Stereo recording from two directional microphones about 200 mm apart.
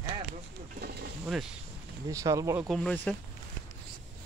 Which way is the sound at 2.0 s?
15° right (ahead or behind).